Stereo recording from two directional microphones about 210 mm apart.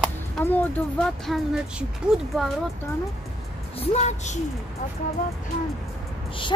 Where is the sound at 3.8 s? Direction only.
30° left (ahead or behind).